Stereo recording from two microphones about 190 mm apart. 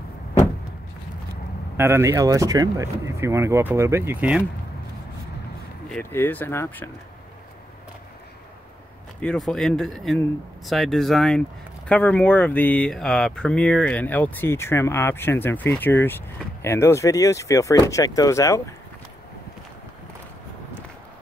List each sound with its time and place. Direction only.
1.8 s speech: 15° right (ahead or behind)
5.9 s speech: 10° left (ahead or behind)
9.2 s speech: 5° left (ahead or behind)